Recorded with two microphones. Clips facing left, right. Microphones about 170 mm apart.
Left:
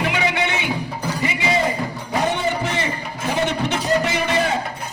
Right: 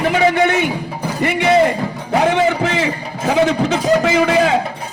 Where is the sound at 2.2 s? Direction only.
90° right.